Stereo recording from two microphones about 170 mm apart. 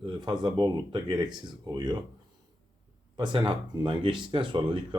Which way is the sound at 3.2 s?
25° right (ahead or behind).